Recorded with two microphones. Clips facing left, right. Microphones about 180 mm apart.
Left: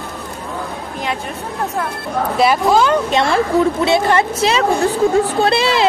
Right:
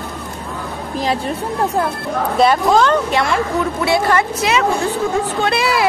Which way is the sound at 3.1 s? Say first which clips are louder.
Left 3 dB; 25° left (ahead or behind).